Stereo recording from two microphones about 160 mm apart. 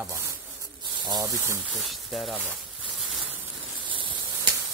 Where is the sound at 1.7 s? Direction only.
Centre (ahead or behind).